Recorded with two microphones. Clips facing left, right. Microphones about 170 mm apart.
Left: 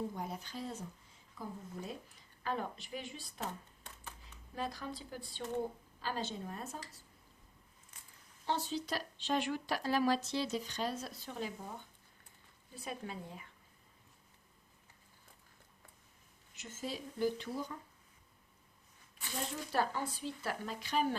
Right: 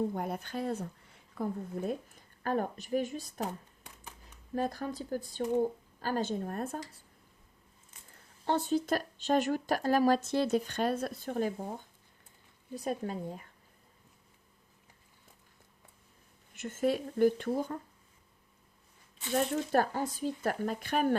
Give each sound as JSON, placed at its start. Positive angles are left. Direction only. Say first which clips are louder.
{"t": 0.1, "sound": "a woman's voice", "louder": "right 7 dB", "side_deg": -60}
{"t": 4.5, "sound": "speech", "louder": "right 8 dB", "side_deg": -50}
{"t": 8.4, "sound": "speech", "louder": "right 8 dB", "side_deg": -55}
{"t": 12.7, "sound": "speech", "louder": "right 9 dB", "side_deg": -40}
{"t": 16.6, "sound": "a woman's voice", "louder": "right 12 dB", "side_deg": -55}
{"t": 19.3, "sound": "speech", "louder": "right 11 dB", "side_deg": -65}